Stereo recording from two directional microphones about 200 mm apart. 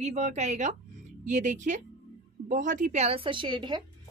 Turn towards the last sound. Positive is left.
turn(degrees=-25)  # may be behind; listen again after turning